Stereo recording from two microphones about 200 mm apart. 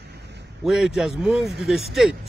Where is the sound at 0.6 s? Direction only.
Centre (ahead or behind).